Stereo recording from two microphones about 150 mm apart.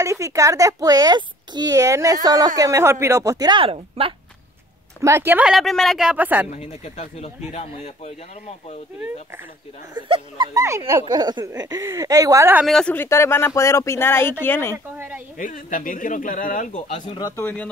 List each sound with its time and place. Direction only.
0.0 s a child's voice: 20° right (ahead or behind); by 4.1 s 40° right (ahead or behind)
5.0 s speech: 15° right (ahead or behind)
6.5 s speech: 50° left (ahead or behind)
9.9 s a child's voice: 35° right (ahead or behind)
12.6 s speech: centre (ahead or behind)
12.9 s speech: 15° left (ahead or behind)
15.0 s speech: 10° right (ahead or behind)
15.3 s speech: 60° left (ahead or behind)
17.2 s speech: 15° left (ahead or behind)